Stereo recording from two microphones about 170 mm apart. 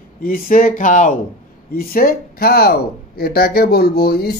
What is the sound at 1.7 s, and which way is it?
Speech, 60° left (ahead or behind).